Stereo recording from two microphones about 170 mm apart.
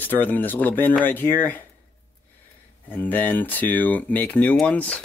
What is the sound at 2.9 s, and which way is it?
Speech, 10° left (ahead or behind).